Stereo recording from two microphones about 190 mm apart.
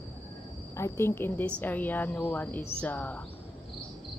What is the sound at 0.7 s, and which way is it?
A woman's voice, 15° left (ahead or behind).